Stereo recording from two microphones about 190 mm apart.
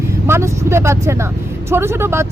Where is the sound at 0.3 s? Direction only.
15° right (ahead or behind).